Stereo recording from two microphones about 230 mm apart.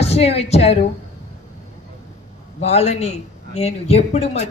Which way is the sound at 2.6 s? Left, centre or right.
Left.